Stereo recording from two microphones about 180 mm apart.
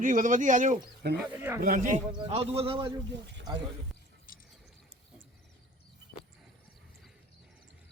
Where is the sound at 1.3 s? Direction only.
10° right (ahead or behind).